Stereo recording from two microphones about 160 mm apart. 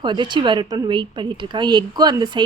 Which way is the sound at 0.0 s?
30° right (ahead or behind).